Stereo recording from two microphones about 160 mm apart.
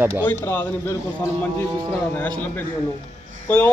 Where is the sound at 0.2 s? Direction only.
15° left (ahead or behind).